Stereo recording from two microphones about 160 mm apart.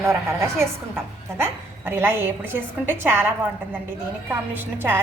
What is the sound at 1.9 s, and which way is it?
A woman's voice, 15° right (ahead or behind).